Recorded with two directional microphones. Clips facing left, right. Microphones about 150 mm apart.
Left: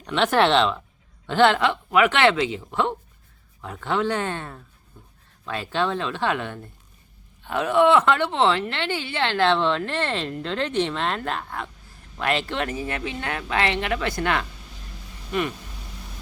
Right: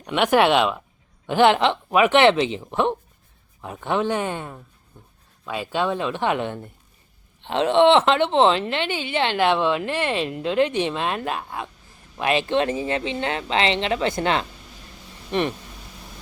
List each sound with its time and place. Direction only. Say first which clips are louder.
0.0 s speech: right 2 dB; 15° right (ahead or behind); by 15.5 s 30° right (ahead or behind)